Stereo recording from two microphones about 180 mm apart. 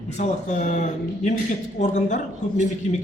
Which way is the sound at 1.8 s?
40° left (ahead or behind).